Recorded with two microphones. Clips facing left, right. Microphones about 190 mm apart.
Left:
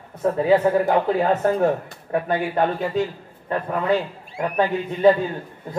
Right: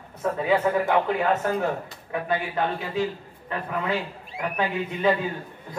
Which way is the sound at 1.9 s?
50° left (ahead or behind).